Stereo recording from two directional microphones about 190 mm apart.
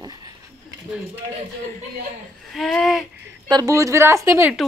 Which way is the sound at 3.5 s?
20° right (ahead or behind).